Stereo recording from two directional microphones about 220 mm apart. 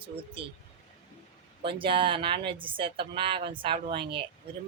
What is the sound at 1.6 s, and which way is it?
A woman's voice, 25° right (ahead or behind).